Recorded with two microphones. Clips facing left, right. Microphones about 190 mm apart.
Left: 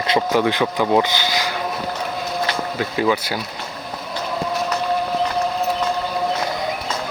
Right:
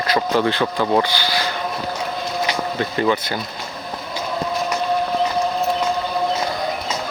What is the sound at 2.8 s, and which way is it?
Speech, 5° left (ahead or behind).